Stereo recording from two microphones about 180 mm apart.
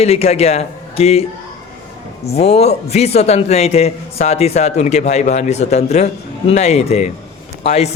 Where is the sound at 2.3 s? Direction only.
35° left (ahead or behind).